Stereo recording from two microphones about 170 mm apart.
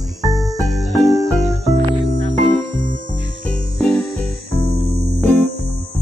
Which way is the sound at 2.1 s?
50° right (ahead or behind).